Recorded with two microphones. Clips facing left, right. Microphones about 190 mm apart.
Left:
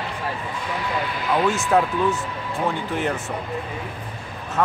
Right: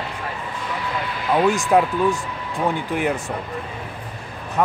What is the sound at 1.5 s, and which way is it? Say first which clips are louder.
Speech: right 2 dB; 15° right (ahead or behind).